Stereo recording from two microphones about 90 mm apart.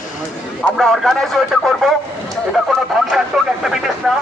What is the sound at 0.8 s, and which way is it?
Speech, 5° left (ahead or behind).